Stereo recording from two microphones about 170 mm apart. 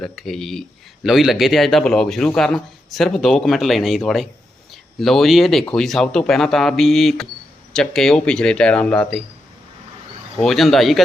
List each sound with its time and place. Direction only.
0.0 s a man's voice: centre (ahead or behind)
10.4 s a man's voice: centre (ahead or behind)